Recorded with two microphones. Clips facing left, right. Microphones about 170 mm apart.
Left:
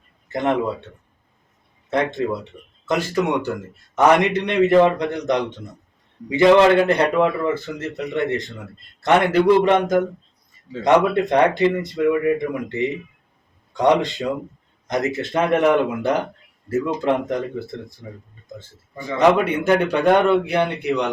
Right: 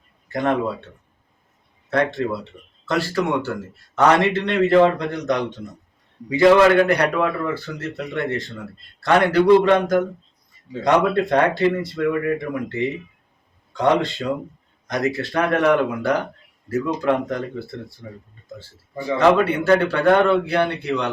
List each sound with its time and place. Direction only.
0.3 s a man's voice: 20° left (ahead or behind)
1.9 s a man's voice: 20° left (ahead or behind)
13.7 s a man's voice: 20° left (ahead or behind)